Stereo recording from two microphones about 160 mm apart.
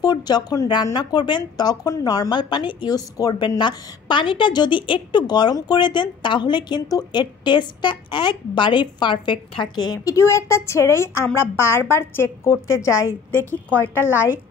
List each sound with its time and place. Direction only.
0.0 s a woman's voice: 25° left (ahead or behind); by 14.0 s 10° left (ahead or behind)